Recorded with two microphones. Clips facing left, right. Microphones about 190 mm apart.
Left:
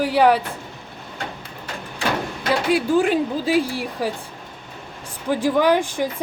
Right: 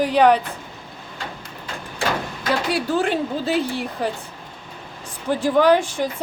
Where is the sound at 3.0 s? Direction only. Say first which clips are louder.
Left 3 dB; 10° left (ahead or behind).